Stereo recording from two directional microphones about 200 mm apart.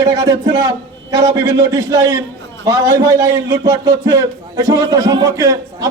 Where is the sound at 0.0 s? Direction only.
20° right (ahead or behind).